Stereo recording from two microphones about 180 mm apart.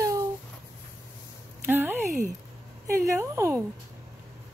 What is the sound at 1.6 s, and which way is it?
A woman's voice, 10° right (ahead or behind).